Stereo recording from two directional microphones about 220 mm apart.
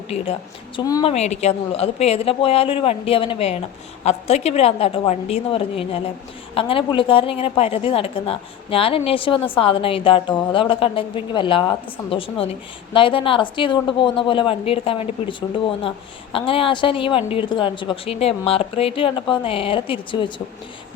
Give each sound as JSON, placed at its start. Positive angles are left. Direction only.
{"t": 0.8, "sound": "speech", "side_deg": 15}
{"t": 1.1, "sound": "a woman's voice", "side_deg": 30}